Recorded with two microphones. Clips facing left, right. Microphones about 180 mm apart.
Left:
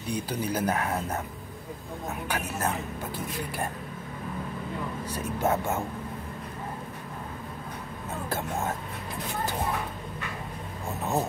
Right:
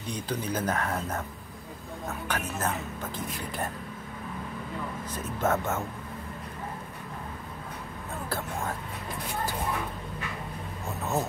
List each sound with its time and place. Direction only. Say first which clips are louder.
0.1 s speech: left 2 dB; 10° left (ahead or behind)
2.2 s speech: left 1 dB; 10° left (ahead or behind)
5.1 s speech: left 1 dB; 10° left (ahead or behind)
8.3 s speech: left 3 dB; 20° left (ahead or behind)